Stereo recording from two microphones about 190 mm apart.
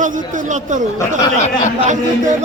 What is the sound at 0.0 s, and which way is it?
Speech, 40° right (ahead or behind).